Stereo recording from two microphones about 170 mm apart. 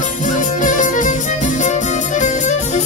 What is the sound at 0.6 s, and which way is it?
Music, 50° left (ahead or behind).